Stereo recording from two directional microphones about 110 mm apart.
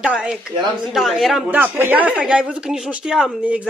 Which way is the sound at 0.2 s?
5° right (ahead or behind).